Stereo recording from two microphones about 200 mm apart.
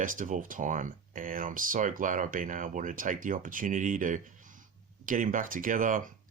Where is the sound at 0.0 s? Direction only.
40° right (ahead or behind).